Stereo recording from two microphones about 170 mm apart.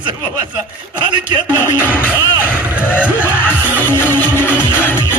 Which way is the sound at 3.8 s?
10° left (ahead or behind).